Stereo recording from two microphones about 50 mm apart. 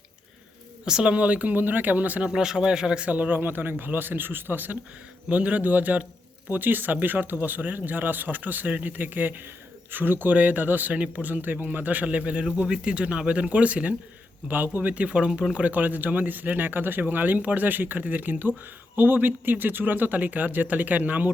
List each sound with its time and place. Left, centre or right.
0.9 s speech: centre; by 2.2 s right
2.2 s speech: centre
3.1 s speech: right
5.3 s speech: right
10.9 s speech: right
14.4 s speech: right; by 15.5 s centre
15.5 s speech: right